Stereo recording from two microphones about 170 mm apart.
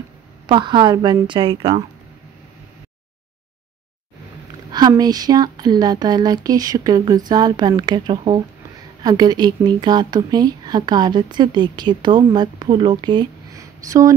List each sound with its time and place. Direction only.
0.5 s a woman's voice: 25° right (ahead or behind)
4.7 s a woman's voice: 25° right (ahead or behind)